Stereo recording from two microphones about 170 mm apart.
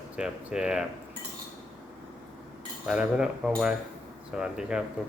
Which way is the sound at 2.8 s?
5° right (ahead or behind).